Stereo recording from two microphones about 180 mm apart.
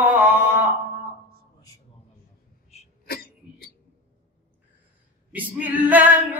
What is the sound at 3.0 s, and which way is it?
Cough, 55° left (ahead or behind).